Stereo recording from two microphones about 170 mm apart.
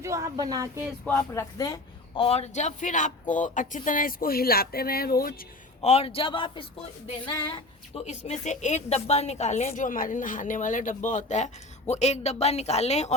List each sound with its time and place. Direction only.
0.0 s speech: 20° right (ahead or behind)
1.0 s a woman's voice: 15° left (ahead or behind); by 5.5 s 60° left (ahead or behind)
5.8 s a woman's voice: 40° left (ahead or behind)
8.0 s a woman's voice: 45° left (ahead or behind)